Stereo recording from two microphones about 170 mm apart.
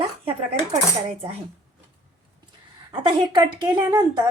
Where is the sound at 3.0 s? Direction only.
25° right (ahead or behind).